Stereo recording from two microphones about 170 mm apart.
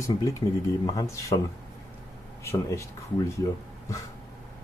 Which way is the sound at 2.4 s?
15° left (ahead or behind).